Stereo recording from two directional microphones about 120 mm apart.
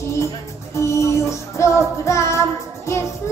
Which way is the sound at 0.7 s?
25° left (ahead or behind).